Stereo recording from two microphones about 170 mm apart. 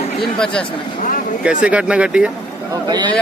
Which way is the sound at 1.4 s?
5° right (ahead or behind).